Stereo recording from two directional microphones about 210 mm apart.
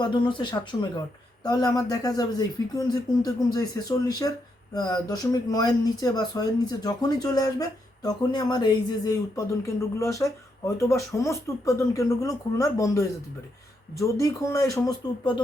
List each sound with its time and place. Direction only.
0.0 s speech: 20° left (ahead or behind)